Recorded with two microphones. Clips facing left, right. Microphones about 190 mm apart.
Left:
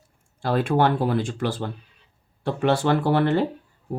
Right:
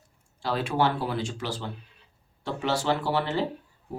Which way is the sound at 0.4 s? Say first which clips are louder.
Left 5 dB; 55° left (ahead or behind).